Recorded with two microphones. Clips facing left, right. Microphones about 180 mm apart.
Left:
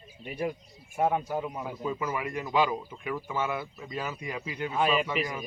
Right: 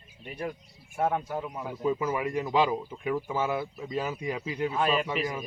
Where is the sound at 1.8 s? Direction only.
20° right (ahead or behind).